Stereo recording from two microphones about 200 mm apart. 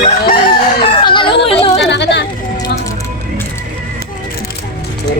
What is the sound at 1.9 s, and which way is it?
Speech, 60° left (ahead or behind).